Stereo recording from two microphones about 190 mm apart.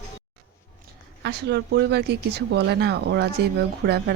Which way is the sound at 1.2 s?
60° right (ahead or behind).